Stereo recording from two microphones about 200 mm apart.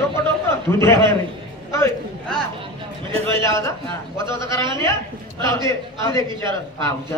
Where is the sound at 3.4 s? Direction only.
15° left (ahead or behind).